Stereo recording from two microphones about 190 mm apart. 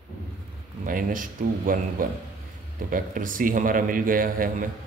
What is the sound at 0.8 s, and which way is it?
Speech, 45° right (ahead or behind).